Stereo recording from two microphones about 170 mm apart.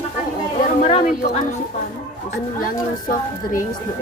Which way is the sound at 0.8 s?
45° left (ahead or behind).